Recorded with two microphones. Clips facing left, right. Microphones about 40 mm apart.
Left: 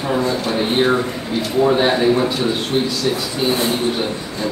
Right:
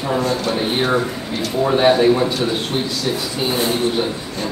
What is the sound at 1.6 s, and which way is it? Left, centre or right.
Speech, centre.